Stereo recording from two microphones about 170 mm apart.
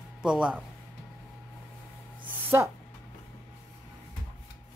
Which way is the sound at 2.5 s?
10° right (ahead or behind).